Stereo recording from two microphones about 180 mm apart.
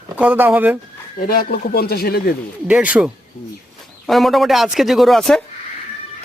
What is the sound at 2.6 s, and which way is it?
A man's voice, 5° right (ahead or behind).